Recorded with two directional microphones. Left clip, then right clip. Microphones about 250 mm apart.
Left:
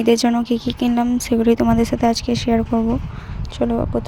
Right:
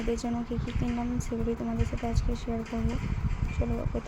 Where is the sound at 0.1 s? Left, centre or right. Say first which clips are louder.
Left 17 dB; left.